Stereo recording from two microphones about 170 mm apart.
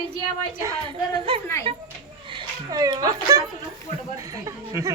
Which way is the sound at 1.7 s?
35° right (ahead or behind).